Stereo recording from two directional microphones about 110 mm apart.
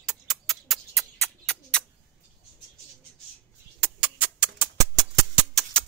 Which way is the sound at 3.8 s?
15° right (ahead or behind).